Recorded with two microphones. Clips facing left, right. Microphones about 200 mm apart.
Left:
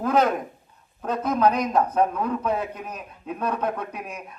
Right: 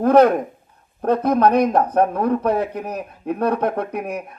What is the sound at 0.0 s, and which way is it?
A man's voice, 65° right (ahead or behind).